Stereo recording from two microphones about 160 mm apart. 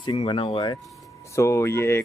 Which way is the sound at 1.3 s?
20° left (ahead or behind).